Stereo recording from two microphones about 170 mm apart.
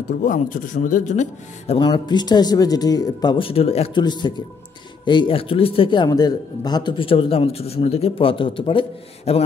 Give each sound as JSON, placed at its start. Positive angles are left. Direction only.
{"t": 0.2, "sound": "speech", "side_deg": 50}
{"t": 1.8, "sound": "a man's voice", "side_deg": 25}